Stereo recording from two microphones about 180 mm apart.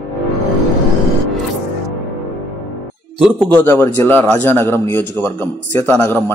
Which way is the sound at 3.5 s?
10° left (ahead or behind).